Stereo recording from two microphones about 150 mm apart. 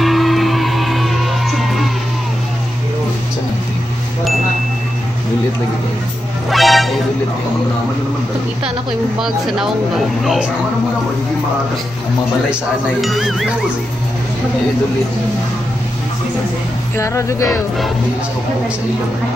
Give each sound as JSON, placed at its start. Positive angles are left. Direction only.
{"t": 0.0, "sound": "music", "side_deg": 0}
{"t": 6.5, "sound": "music", "side_deg": 0}
{"t": 10.2, "sound": "speech", "side_deg": 0}
{"t": 13.0, "sound": "speech", "side_deg": 0}
{"t": 16.9, "sound": "speech", "side_deg": 20}